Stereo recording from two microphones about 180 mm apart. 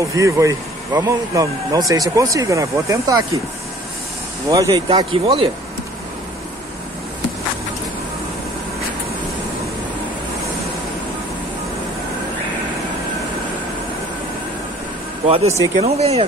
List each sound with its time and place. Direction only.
0.1 s speech: 15° right (ahead or behind)
4.5 s speech: 20° right (ahead or behind)
4.9 s speech: 30° right (ahead or behind)
15.2 s speech: 35° right (ahead or behind)